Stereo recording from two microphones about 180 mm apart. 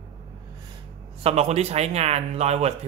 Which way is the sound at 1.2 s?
35° right (ahead or behind).